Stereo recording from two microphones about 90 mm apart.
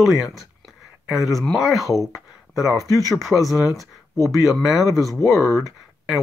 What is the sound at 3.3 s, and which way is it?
Speech, 40° left (ahead or behind).